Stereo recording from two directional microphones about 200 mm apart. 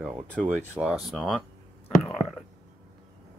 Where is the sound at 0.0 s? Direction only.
5° right (ahead or behind).